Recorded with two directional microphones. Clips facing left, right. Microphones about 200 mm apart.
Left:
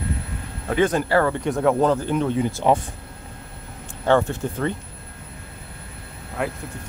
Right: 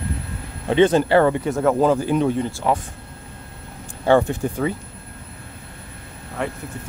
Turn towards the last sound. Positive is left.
turn(degrees=5)  # may be behind; listen again after turning